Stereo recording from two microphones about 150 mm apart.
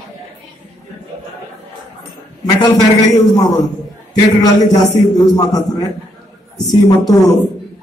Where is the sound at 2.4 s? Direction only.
25° left (ahead or behind).